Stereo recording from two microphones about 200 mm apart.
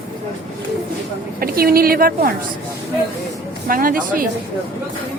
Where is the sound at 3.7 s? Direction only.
45° right (ahead or behind).